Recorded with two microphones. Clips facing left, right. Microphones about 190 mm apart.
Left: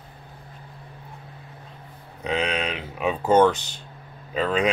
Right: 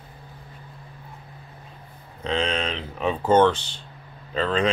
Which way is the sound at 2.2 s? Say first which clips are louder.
Even; 10° left (ahead or behind).